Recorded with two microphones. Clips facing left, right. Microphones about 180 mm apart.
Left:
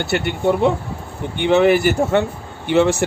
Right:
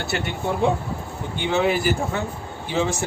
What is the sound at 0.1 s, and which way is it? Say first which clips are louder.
Speech: left 8 dB; 65° left (ahead or behind).